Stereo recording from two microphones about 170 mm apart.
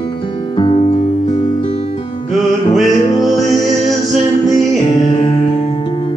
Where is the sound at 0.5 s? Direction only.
35° left (ahead or behind).